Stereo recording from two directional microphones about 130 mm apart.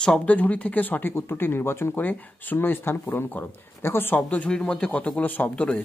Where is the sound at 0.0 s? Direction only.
5° left (ahead or behind).